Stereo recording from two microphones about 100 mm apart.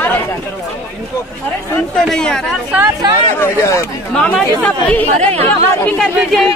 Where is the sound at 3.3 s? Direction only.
25° left (ahead or behind).